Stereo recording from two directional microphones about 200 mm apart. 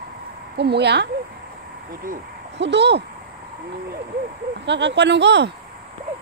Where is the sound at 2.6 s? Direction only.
60° right (ahead or behind).